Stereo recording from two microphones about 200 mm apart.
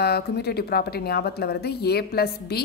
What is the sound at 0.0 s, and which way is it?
A woman's voice, 55° left (ahead or behind).